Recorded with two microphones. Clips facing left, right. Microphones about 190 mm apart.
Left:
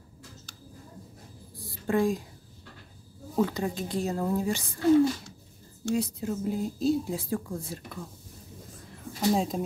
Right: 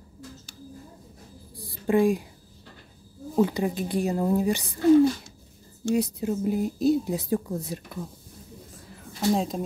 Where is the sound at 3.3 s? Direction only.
15° right (ahead or behind).